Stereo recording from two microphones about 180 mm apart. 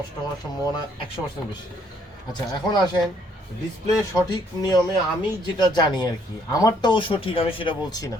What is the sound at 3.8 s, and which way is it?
Speech, 20° left (ahead or behind).